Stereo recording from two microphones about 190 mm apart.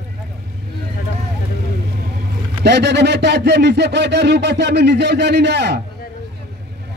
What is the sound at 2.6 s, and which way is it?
Speech, 60° right (ahead or behind).